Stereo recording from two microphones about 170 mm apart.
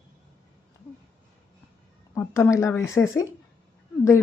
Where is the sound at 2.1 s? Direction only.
15° left (ahead or behind).